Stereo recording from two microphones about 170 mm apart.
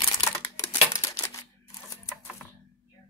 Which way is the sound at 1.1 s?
15° left (ahead or behind).